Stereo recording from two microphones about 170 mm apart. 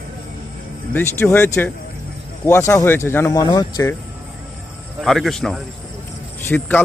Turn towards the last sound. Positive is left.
turn(degrees=10)  # may be behind; listen again after turning